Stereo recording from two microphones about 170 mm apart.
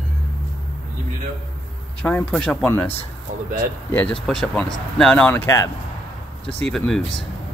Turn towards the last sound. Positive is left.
turn(degrees=0)  # may be behind; listen again after turning